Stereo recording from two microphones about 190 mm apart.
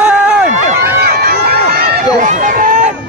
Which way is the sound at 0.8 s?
55° right (ahead or behind).